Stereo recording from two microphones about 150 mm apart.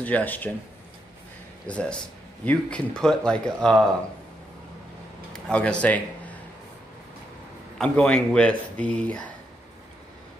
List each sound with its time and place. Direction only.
0.0 s speech: 10° left (ahead or behind)
1.7 s speech: 5° left (ahead or behind)
5.3 s a man's voice: 5° left (ahead or behind)
7.8 s speech: 5° left (ahead or behind)